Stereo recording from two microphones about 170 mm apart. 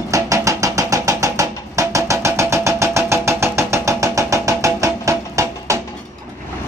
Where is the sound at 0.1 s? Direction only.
20° right (ahead or behind).